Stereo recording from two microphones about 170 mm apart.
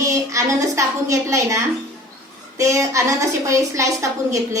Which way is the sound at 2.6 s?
20° right (ahead or behind).